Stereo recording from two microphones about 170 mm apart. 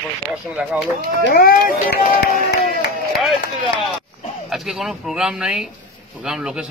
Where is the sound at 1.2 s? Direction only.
65° left (ahead or behind).